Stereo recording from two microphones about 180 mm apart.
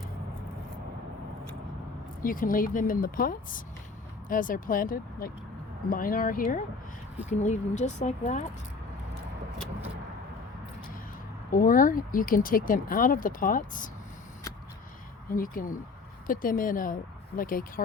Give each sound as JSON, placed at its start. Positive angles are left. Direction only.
{"t": 2.2, "sound": "speech", "side_deg": 50}
{"t": 11.5, "sound": "speech", "side_deg": 50}
{"t": 15.3, "sound": "speech", "side_deg": 50}